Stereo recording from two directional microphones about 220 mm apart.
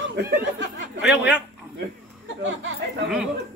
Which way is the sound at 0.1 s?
55° right (ahead or behind).